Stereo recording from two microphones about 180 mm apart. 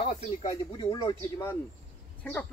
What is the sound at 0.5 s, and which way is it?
Speech, 20° left (ahead or behind).